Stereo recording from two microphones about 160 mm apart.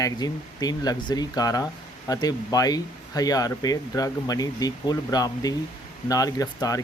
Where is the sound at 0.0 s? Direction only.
25° left (ahead or behind).